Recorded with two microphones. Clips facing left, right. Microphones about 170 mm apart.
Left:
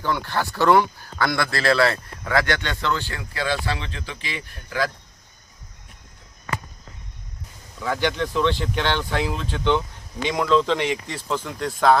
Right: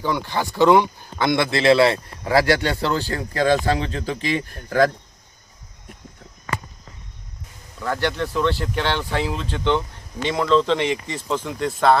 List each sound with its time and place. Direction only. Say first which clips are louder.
0.0 s speech: right 1 dB; 15° right (ahead or behind); by 4.9 s 45° right (ahead or behind)
7.8 s speech: even; centre (ahead or behind)